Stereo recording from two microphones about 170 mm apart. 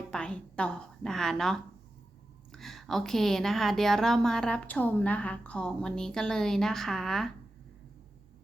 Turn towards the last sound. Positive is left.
turn(degrees=0)  # may be behind; listen again after turning